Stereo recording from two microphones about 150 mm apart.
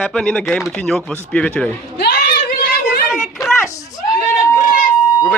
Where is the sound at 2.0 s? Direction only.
90° left.